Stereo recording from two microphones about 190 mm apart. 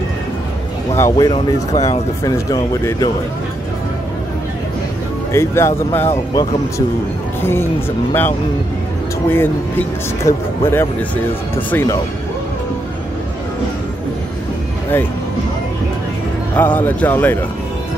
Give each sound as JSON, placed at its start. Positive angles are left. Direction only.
{"t": 0.9, "sound": "speech", "side_deg": 15}
{"t": 5.3, "sound": "speech", "side_deg": 15}
{"t": 9.3, "sound": "speech", "side_deg": 10}
{"t": 16.5, "sound": "speech", "side_deg": 10}